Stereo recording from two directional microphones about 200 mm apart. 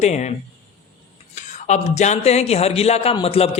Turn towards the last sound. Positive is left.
turn(degrees=30)  # may be behind; listen again after turning